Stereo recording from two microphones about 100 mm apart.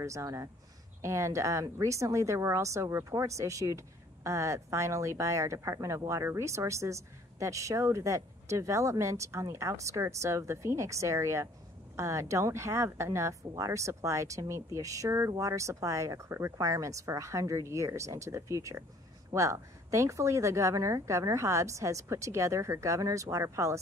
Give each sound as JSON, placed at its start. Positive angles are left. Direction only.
{"t": 0.0, "sound": "a woman's voice", "side_deg": -30}